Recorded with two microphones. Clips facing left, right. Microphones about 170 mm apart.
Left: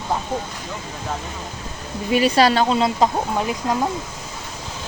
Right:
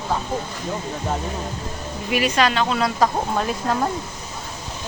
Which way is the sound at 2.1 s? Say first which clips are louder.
Left 4 dB; 30° left (ahead or behind).